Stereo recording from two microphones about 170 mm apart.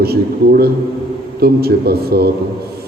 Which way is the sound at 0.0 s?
65° right (ahead or behind).